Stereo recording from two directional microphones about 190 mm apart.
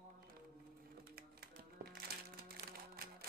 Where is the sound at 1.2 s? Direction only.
55° right (ahead or behind).